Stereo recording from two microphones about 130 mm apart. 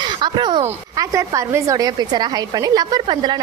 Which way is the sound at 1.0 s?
25° right (ahead or behind).